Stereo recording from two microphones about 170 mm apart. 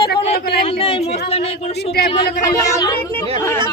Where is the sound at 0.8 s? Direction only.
35° left (ahead or behind).